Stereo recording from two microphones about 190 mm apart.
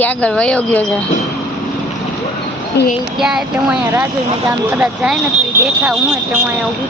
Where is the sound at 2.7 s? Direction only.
60° left (ahead or behind).